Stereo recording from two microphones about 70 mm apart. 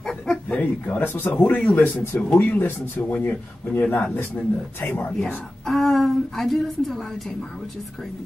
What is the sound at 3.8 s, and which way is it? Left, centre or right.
Speech, centre.